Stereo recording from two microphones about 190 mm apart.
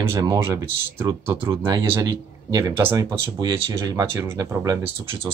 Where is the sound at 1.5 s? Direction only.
25° right (ahead or behind).